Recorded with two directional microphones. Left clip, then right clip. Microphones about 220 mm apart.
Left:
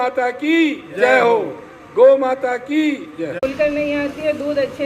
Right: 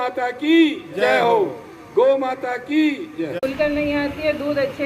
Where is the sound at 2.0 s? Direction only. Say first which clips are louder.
Left 5 dB; 45° left (ahead or behind).